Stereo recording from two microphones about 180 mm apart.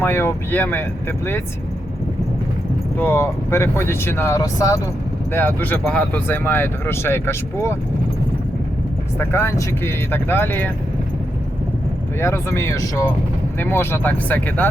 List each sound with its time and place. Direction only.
0.0 s speech: 10° left (ahead or behind)
3.0 s speech: 15° left (ahead or behind)
9.1 s speech: 15° left (ahead or behind)
12.2 s speech: 15° left (ahead or behind)